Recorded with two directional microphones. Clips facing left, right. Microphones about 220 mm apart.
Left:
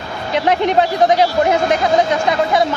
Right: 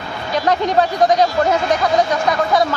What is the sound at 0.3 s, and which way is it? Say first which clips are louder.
Speech: left 2 dB; 20° left (ahead or behind).